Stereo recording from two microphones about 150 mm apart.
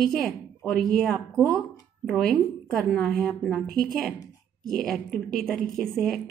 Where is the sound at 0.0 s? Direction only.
5° left (ahead or behind).